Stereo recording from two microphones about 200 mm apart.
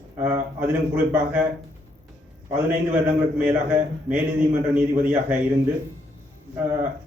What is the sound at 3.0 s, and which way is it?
A man's voice, 10° right (ahead or behind).